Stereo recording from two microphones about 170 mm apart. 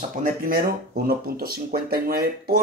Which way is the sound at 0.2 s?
60° right (ahead or behind).